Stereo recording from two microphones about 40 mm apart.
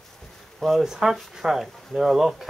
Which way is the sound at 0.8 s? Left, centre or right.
Centre.